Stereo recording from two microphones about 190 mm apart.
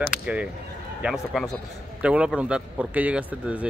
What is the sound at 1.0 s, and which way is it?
A man's voice, centre (ahead or behind).